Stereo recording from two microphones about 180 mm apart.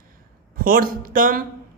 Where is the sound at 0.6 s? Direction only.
50° right (ahead or behind).